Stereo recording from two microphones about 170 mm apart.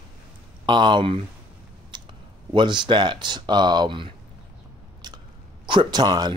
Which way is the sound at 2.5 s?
25° right (ahead or behind).